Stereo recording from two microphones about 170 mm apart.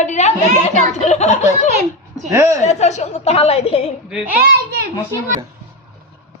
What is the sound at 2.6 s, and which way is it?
A woman's voice, 40° left (ahead or behind).